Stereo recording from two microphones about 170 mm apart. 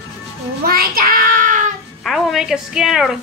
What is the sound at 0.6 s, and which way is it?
Child singing, 60° right (ahead or behind).